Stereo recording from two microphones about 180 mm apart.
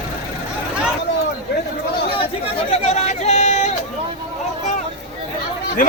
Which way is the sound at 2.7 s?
35° left (ahead or behind).